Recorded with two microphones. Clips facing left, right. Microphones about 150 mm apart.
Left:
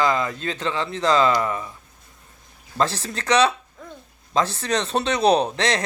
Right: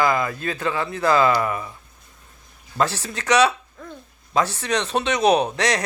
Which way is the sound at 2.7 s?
30° left (ahead or behind).